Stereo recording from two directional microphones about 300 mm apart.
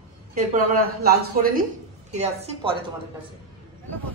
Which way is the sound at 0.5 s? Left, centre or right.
Right.